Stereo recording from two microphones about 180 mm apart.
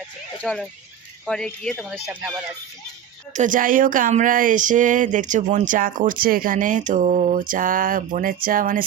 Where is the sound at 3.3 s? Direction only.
45° right (ahead or behind).